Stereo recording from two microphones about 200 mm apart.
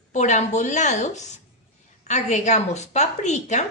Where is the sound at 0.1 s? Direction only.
35° left (ahead or behind).